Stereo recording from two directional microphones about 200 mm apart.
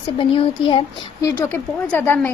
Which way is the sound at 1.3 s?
10° left (ahead or behind).